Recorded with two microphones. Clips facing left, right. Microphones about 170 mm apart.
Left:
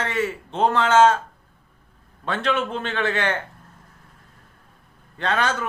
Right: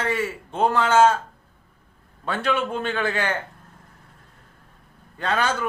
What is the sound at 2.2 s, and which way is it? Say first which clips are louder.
A man's voice: even; 10° right (ahead or behind).